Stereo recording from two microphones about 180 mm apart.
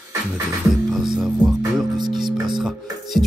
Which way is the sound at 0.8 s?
Centre (ahead or behind).